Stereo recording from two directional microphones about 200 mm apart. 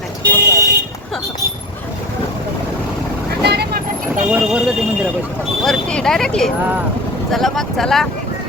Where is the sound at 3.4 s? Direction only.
55° right (ahead or behind).